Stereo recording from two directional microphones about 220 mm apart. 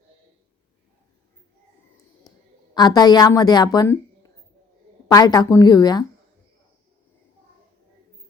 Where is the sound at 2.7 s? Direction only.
20° left (ahead or behind).